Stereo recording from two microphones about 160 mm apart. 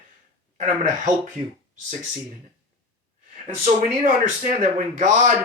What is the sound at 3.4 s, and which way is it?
Speech, 50° right (ahead or behind).